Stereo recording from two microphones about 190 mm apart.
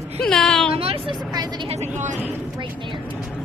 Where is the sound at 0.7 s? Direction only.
30° right (ahead or behind).